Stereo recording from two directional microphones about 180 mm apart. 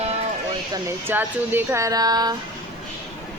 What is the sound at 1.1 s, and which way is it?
Speech, 10° right (ahead or behind).